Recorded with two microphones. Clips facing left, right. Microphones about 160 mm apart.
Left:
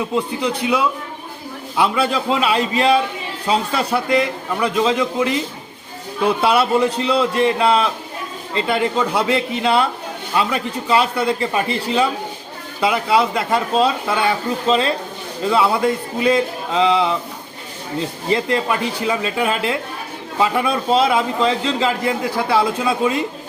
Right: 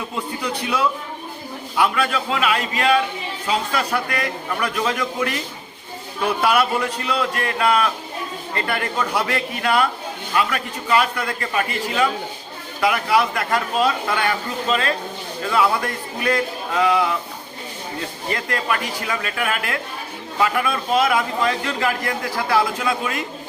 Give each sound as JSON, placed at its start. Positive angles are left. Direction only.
{"t": 0.4, "sound": "a man's voice", "side_deg": 15}
{"t": 18.3, "sound": "a man's voice", "side_deg": 25}